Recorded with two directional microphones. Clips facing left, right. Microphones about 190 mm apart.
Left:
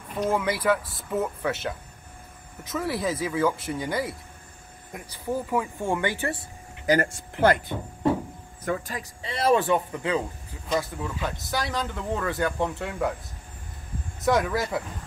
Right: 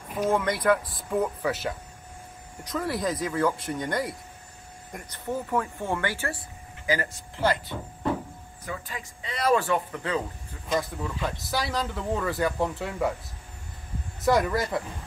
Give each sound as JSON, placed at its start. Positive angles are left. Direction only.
{"t": 0.1, "sound": "speech", "side_deg": -5}
{"t": 7.3, "sound": "speech", "side_deg": 55}
{"t": 8.6, "sound": "a man's voice", "side_deg": 45}
{"t": 10.7, "sound": "speech", "side_deg": 0}
{"t": 14.2, "sound": "speech", "side_deg": 0}